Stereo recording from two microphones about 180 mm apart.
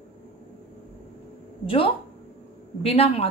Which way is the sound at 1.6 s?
30° left (ahead or behind).